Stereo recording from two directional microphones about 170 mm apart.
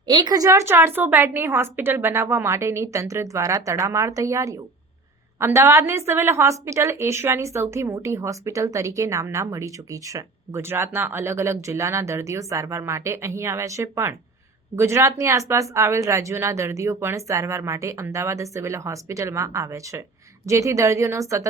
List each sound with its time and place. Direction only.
0.1 s a woman's voice: 25° right (ahead or behind)